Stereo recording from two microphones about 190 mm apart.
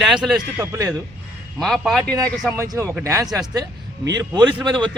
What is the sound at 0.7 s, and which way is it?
Speech, 15° right (ahead or behind).